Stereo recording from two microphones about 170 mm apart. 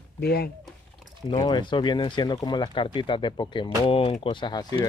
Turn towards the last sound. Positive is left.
turn(degrees=25)  # may be behind; listen again after turning